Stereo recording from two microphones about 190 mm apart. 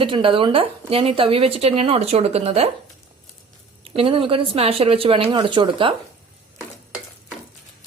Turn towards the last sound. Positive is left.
turn(degrees=-25)  # may be behind; listen again after turning